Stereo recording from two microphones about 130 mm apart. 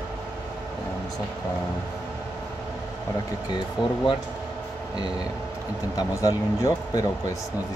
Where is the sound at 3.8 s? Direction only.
35° left (ahead or behind).